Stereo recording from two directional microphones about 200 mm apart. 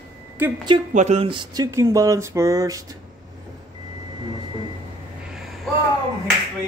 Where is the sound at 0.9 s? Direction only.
35° right (ahead or behind); by 2.8 s 15° right (ahead or behind).